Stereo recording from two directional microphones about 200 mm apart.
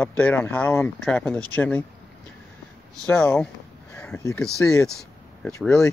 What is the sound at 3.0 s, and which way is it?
Speech, 10° left (ahead or behind).